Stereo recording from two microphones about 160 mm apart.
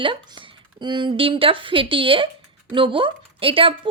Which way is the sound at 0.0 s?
30° right (ahead or behind).